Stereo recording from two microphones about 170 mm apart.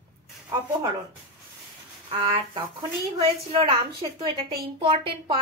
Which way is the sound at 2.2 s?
30° right (ahead or behind).